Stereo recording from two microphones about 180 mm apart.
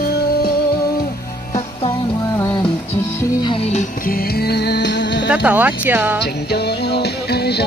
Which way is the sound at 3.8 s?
55° left (ahead or behind).